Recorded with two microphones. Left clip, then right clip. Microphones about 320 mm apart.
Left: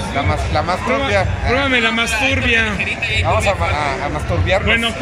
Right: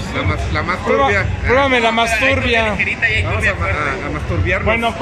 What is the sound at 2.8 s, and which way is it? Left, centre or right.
A man's voice, centre.